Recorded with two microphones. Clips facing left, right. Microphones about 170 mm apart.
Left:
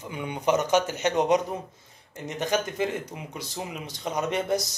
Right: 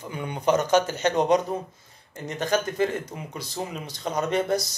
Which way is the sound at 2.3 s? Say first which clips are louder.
Right 2 dB; 15° left (ahead or behind).